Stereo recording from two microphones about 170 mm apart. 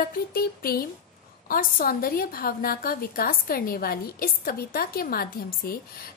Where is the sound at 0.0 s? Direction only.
60° left (ahead or behind).